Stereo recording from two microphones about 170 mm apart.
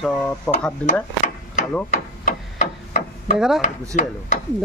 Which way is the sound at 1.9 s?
45° left (ahead or behind).